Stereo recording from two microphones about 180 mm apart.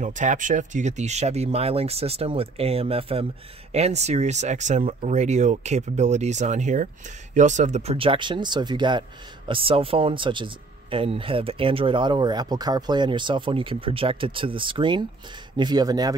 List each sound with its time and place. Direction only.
0.0 s speech: 45° right (ahead or behind); by 16.2 s 20° right (ahead or behind)